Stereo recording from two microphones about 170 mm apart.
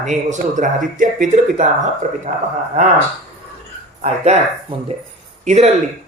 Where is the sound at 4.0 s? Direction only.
40° right (ahead or behind).